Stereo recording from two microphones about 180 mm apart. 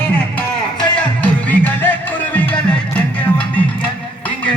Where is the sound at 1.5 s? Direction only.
10° left (ahead or behind).